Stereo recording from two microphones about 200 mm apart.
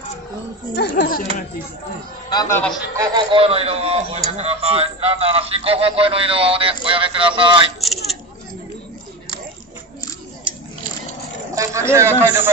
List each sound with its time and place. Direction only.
0.7 s speech: 55° left (ahead or behind)
2.2 s a man's voice: 15° left (ahead or behind)
3.2 s a man's voice: 25° right (ahead or behind)
7.8 s a sound: centre (ahead or behind)
11.5 s a man's voice: 15° right (ahead or behind)